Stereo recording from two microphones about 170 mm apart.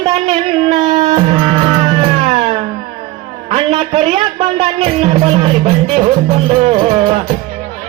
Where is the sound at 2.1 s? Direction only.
40° right (ahead or behind).